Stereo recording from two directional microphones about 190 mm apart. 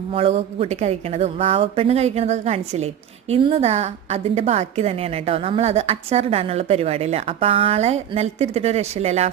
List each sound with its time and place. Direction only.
0.1 s a woman's voice: 30° right (ahead or behind)